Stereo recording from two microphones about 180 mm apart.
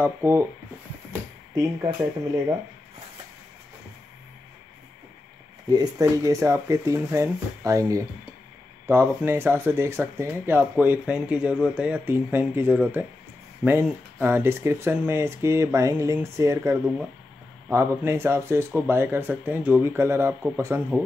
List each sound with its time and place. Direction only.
0.0 s speech: 15° right (ahead or behind)
1.5 s speech: 20° right (ahead or behind)
5.7 s speech: 20° right (ahead or behind)